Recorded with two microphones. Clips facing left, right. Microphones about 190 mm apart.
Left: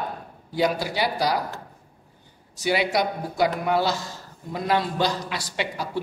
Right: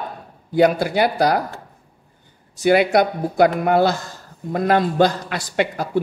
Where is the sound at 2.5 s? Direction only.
55° right (ahead or behind).